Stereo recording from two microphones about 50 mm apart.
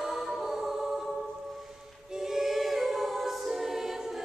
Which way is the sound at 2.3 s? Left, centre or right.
Centre.